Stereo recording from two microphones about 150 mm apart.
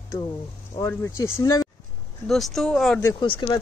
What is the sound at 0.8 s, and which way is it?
Speech, 15° left (ahead or behind).